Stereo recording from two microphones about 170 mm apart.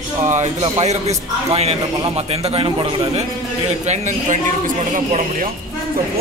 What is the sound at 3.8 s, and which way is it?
Speech, 45° right (ahead or behind).